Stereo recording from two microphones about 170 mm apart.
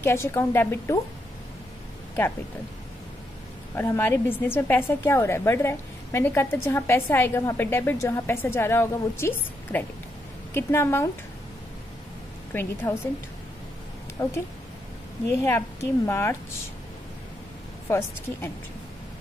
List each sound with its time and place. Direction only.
0.0 s a woman's voice: 15° left (ahead or behind)
3.7 s a woman's voice: 15° left (ahead or behind)
12.5 s a woman's voice: 10° left (ahead or behind)
14.2 s a woman's voice: 15° left (ahead or behind)
15.4 s a woman's voice: 15° left (ahead or behind)
17.8 s a woman's voice: 15° left (ahead or behind)